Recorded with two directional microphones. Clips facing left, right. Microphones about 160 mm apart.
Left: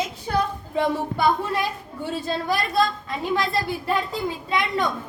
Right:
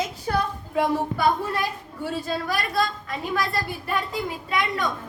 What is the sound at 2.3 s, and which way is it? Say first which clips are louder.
A woman's voice: left 5 dB; 25° left (ahead or behind).